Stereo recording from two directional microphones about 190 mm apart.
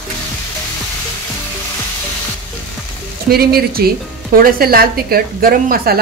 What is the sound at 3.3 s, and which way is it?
A woman's voice, 55° right (ahead or behind).